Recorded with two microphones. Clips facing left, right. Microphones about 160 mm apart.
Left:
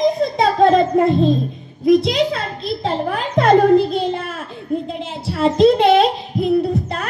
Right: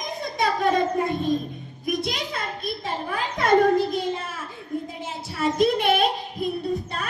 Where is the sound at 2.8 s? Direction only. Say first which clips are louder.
Left 9 dB; 90° left; by 4.0 s 70° left (ahead or behind).